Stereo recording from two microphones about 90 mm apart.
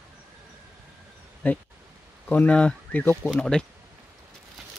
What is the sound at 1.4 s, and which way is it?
Speech, 20° left (ahead or behind).